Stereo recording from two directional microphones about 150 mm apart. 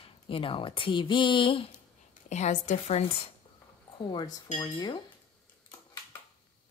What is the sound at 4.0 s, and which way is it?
Speech, 30° left (ahead or behind).